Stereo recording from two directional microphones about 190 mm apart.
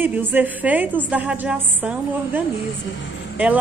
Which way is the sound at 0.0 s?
10° right (ahead or behind).